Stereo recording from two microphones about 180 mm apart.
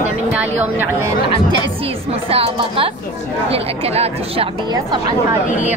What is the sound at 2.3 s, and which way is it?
Speech, 30° right (ahead or behind).